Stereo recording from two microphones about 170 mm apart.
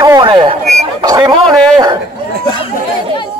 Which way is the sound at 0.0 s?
25° right (ahead or behind).